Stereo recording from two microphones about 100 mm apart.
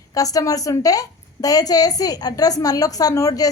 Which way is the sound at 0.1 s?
35° left (ahead or behind).